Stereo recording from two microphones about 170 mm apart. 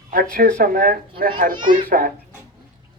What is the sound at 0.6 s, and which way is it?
Speech, 55° right (ahead or behind).